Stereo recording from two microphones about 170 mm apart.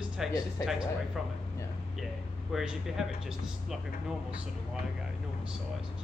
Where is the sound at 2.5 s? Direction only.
Centre (ahead or behind).